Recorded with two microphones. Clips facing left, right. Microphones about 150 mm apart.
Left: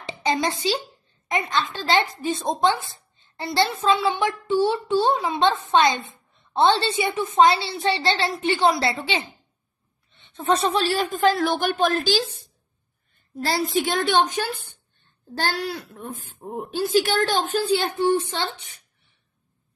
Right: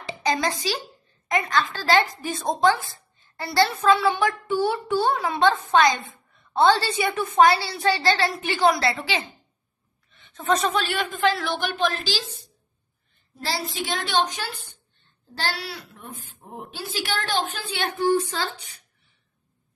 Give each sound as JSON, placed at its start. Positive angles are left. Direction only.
{"t": 0.0, "sound": "a child's voice", "side_deg": 25}
{"t": 13.3, "sound": "a woman's voice", "side_deg": 50}